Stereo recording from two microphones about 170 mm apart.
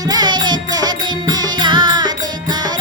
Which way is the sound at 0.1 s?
25° right (ahead or behind).